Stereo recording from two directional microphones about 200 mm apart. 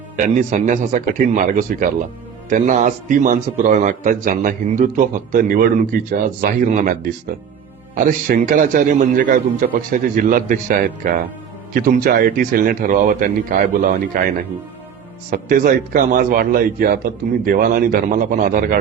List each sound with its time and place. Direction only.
0.2 s a man's voice: 35° right (ahead or behind)